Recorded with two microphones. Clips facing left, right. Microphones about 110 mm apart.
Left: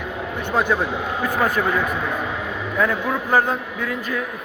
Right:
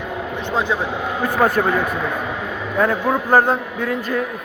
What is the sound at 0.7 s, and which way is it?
Speech, 15° right (ahead or behind).